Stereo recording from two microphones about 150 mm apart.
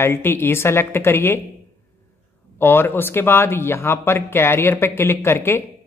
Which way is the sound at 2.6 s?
15° left (ahead or behind).